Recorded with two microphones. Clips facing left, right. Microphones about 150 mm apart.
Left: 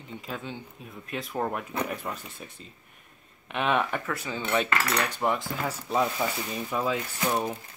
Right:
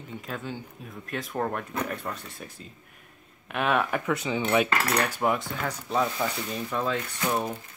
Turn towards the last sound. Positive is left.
turn(degrees=0)  # may be behind; listen again after turning